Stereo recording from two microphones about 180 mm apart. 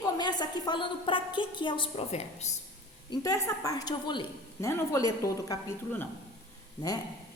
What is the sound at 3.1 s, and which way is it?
A woman's voice, 20° left (ahead or behind).